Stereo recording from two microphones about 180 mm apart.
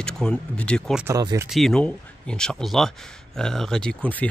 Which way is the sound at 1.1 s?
20° right (ahead or behind).